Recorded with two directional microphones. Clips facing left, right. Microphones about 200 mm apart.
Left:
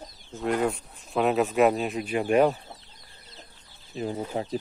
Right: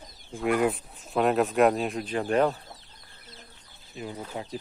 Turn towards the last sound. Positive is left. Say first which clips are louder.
# left 6 dB
turn(degrees=35)  # may be behind; listen again after turning